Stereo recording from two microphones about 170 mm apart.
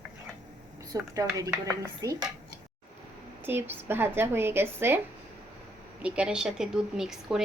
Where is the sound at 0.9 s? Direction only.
20° right (ahead or behind).